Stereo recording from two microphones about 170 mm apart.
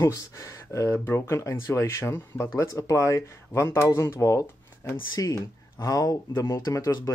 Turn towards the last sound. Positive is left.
turn(degrees=20)  # may be behind; listen again after turning